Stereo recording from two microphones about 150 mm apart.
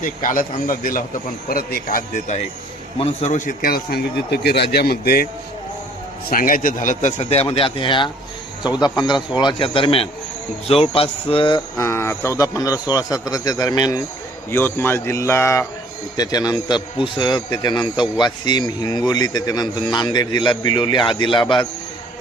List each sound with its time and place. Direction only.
0.0 s a man's voice: 60° left (ahead or behind)
3.0 s a man's voice: 50° left (ahead or behind); by 5.3 s 90° left
6.3 s a man's voice: 65° left (ahead or behind); by 11.6 s 35° left (ahead or behind)
11.8 s a man's voice: 15° left (ahead or behind)
14.5 s a man's voice: 15° left (ahead or behind); by 21.7 s 30° left (ahead or behind)